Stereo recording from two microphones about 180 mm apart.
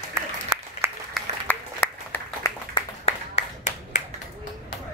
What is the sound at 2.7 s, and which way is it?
Clapping, 35° left (ahead or behind).